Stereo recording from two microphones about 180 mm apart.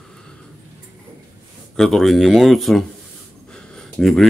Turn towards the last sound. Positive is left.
turn(degrees=0)  # may be behind; listen again after turning